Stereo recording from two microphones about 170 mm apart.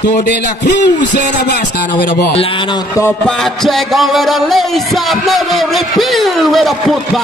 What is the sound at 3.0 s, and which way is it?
Music, 5° left (ahead or behind).